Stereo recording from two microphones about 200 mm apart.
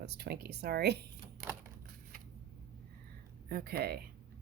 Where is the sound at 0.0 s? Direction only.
55° right (ahead or behind).